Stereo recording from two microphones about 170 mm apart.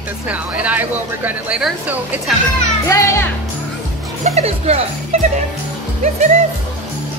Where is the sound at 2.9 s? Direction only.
15° left (ahead or behind).